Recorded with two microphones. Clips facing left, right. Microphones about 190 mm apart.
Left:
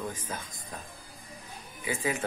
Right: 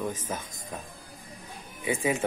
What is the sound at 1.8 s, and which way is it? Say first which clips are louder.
Speech: right 4 dB; 25° right (ahead or behind).